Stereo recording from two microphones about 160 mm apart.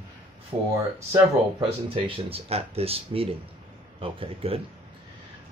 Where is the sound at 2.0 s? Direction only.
35° right (ahead or behind).